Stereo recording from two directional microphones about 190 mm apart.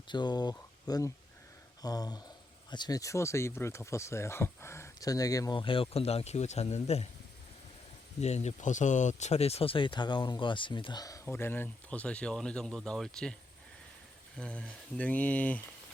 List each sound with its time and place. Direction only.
0.1 s speech: 25° left (ahead or behind)
8.2 s speech: 35° left (ahead or behind); by 13.3 s 5° left (ahead or behind)
14.3 s speech: 5° left (ahead or behind)